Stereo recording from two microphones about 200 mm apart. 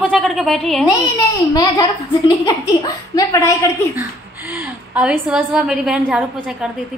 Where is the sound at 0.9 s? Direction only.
20° left (ahead or behind).